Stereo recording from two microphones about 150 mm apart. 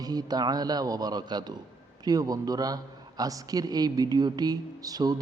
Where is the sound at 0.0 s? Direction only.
25° right (ahead or behind).